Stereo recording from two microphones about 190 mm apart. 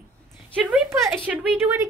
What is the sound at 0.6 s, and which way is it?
A woman's voice, 5° right (ahead or behind).